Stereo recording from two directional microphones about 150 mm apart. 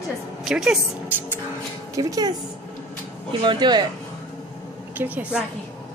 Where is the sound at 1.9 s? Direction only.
25° right (ahead or behind).